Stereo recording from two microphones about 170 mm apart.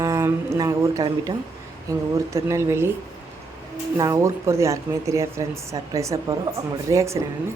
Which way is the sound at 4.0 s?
20° right (ahead or behind).